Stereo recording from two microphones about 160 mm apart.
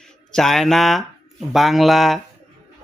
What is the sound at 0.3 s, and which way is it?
A man's voice, centre (ahead or behind).